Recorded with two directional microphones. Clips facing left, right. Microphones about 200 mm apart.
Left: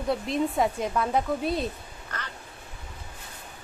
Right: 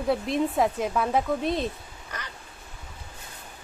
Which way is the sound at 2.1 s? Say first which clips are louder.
Left 1 dB; 10° right (ahead or behind).